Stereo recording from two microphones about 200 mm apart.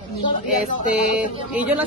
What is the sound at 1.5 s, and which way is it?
Speech, 5° right (ahead or behind).